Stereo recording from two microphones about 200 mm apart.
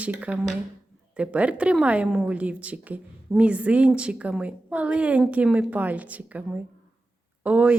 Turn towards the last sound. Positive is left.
turn(degrees=-10)  # may be behind; listen again after turning